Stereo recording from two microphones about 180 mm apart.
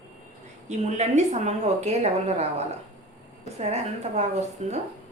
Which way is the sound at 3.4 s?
40° right (ahead or behind).